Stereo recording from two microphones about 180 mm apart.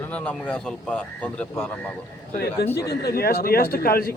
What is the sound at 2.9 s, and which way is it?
A man's voice, 60° left (ahead or behind).